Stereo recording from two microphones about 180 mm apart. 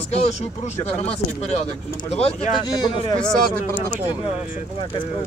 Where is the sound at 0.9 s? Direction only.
35° left (ahead or behind).